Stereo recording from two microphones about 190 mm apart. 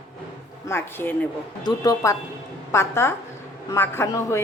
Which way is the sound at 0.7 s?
10° left (ahead or behind).